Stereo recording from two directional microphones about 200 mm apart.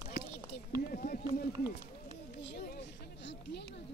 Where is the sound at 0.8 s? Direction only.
45° left (ahead or behind).